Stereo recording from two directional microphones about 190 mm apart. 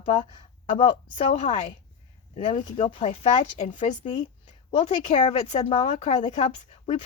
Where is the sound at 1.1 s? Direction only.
35° left (ahead or behind).